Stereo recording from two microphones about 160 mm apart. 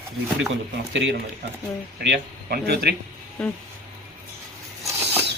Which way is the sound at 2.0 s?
80° right.